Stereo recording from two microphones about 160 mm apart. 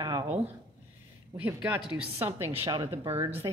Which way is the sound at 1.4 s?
10° right (ahead or behind).